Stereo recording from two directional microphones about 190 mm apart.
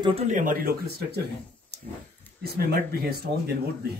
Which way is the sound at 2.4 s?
55° right (ahead or behind).